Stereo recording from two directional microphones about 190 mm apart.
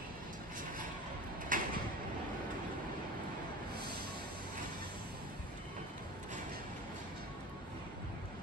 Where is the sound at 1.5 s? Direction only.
45° right (ahead or behind).